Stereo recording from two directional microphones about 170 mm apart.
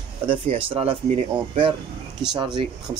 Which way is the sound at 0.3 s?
35° right (ahead or behind).